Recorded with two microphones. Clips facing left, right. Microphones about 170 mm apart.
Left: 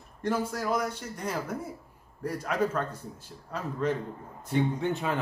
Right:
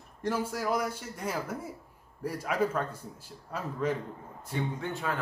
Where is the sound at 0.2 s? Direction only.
10° right (ahead or behind).